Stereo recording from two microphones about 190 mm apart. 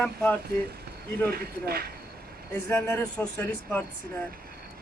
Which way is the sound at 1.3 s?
55° right (ahead or behind).